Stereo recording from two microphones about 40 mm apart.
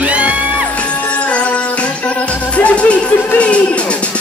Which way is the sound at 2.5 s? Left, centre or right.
Left.